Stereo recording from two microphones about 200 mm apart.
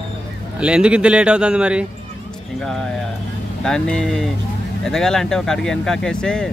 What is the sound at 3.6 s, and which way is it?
Speech, 5° left (ahead or behind).